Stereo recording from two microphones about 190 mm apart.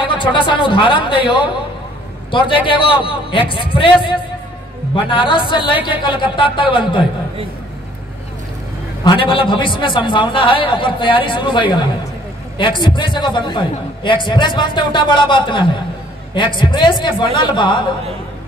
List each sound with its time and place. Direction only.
0.1 s a man's voice: 25° left (ahead or behind)
9.0 s a man's voice: 25° left (ahead or behind)